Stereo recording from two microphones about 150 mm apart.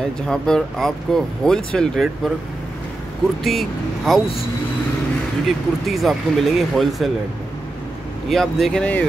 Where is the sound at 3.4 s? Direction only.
Centre (ahead or behind).